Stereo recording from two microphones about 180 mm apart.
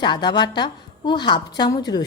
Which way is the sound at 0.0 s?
25° left (ahead or behind).